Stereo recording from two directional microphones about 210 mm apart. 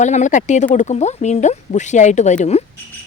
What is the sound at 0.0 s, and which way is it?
Speech, 35° left (ahead or behind).